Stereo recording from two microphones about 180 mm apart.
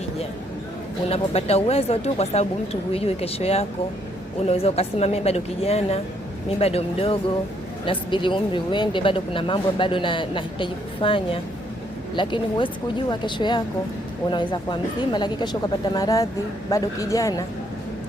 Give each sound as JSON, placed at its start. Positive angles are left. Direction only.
{"t": 1.1, "sound": "a woman's voice", "side_deg": 35}